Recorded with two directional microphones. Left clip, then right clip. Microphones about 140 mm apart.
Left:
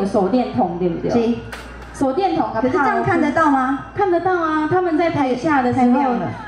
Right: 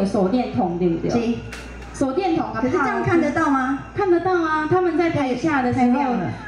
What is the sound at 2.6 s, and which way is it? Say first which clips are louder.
A woman's voice: left 5 dB; 40° left (ahead or behind).